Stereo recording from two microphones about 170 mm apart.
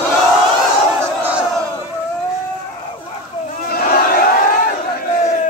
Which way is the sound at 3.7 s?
60° left (ahead or behind).